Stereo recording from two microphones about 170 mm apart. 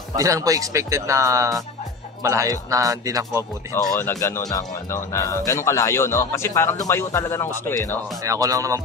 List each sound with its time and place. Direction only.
0.1 s a man's voice: 20° right (ahead or behind)
3.7 s speech: 15° left (ahead or behind)
8.2 s a man's voice: 20° right (ahead or behind)